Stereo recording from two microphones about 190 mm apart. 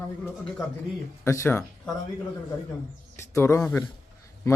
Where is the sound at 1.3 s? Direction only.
15° left (ahead or behind).